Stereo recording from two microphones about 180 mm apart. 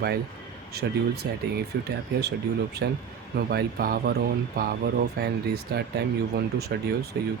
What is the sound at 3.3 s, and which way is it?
Speech, 60° right (ahead or behind).